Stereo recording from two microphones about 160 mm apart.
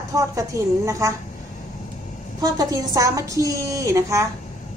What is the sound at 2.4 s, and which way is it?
A woman's voice, 25° right (ahead or behind).